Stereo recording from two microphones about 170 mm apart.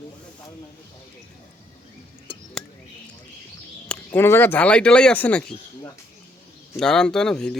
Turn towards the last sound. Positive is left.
turn(degrees=5)  # may be behind; listen again after turning